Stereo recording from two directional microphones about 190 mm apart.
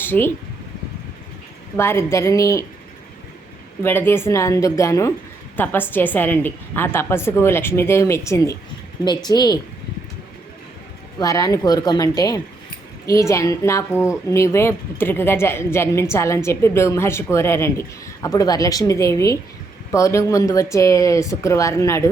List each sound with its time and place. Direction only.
0.0 s speech: 10° left (ahead or behind)
1.7 s a woman's voice: 15° left (ahead or behind)
3.8 s a woman's voice: 10° left (ahead or behind)
11.2 s a woman's voice: 20° left (ahead or behind)